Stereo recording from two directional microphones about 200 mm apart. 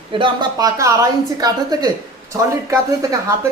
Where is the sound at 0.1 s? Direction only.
20° right (ahead or behind).